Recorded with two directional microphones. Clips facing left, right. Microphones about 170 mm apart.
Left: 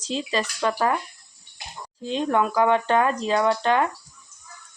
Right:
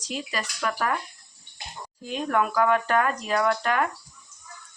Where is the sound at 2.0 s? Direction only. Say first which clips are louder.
Left 3 dB; 25° left (ahead or behind).